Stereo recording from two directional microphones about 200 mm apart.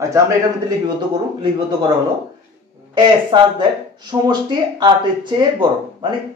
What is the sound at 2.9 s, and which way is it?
Speech, 25° right (ahead or behind).